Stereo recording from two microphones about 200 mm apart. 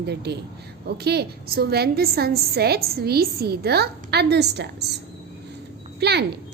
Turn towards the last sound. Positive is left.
turn(degrees=-55)  # may be behind; listen again after turning